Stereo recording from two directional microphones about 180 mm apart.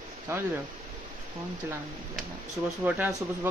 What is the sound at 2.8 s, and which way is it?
Speech, 10° right (ahead or behind).